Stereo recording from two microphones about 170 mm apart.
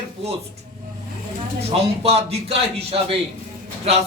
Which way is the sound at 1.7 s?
35° right (ahead or behind).